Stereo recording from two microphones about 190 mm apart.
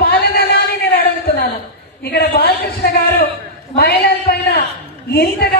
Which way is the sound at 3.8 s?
55° left (ahead or behind).